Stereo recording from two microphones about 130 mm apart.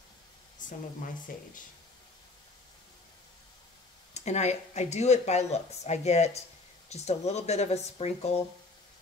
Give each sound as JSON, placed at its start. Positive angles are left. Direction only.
{"t": 0.6, "sound": "a sound", "side_deg": 85}
{"t": 1.3, "sound": "speech", "side_deg": 90}
{"t": 4.1, "sound": "speech", "side_deg": 60}